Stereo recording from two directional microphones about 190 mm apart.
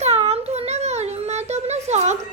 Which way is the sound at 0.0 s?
35° right (ahead or behind).